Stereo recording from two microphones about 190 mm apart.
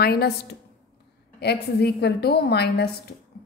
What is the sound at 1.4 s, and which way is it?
A woman's voice, 60° left (ahead or behind).